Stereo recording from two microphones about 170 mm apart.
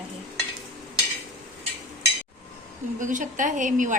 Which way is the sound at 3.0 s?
50° right (ahead or behind).